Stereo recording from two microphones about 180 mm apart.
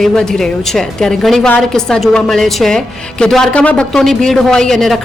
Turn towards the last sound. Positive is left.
turn(degrees=0)  # may be behind; listen again after turning